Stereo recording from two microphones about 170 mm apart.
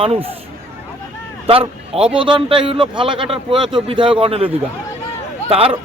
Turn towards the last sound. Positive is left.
turn(degrees=-35)  # may be behind; listen again after turning